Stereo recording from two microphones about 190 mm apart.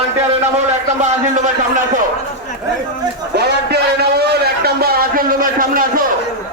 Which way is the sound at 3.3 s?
60° right (ahead or behind).